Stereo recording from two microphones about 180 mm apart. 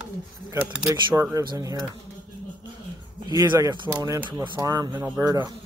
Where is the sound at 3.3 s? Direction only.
20° right (ahead or behind).